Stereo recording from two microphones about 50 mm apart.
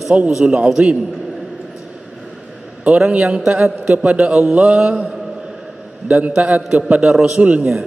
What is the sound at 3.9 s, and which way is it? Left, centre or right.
Mantra, right.